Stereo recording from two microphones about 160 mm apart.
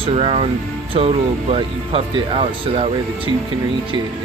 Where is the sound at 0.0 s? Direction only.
35° right (ahead or behind).